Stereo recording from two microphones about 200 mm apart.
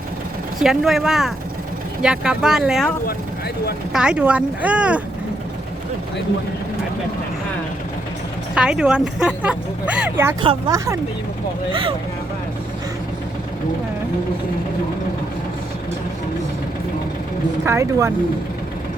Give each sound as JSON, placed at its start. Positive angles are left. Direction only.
{"t": 0.6, "sound": "speech", "side_deg": 0}
{"t": 3.9, "sound": "speech", "side_deg": -5}
{"t": 8.5, "sound": "speech", "side_deg": -5}
{"t": 10.4, "sound": "speech", "side_deg": -20}
{"t": 17.7, "sound": "speech", "side_deg": -15}